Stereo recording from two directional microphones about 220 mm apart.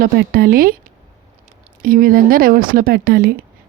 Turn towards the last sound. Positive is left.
turn(degrees=-40)  # may be behind; listen again after turning